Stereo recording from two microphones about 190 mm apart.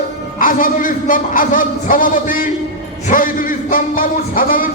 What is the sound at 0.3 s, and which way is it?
Speech, 45° left (ahead or behind).